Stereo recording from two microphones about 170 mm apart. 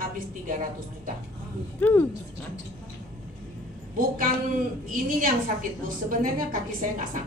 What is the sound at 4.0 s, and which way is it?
A woman's voice, 55° right (ahead or behind).